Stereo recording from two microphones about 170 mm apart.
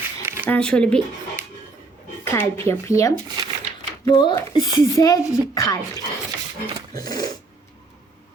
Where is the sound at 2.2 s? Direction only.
15° left (ahead or behind).